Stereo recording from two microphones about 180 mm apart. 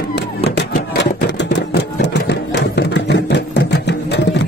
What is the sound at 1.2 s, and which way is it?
Sewing machine, 70° left (ahead or behind).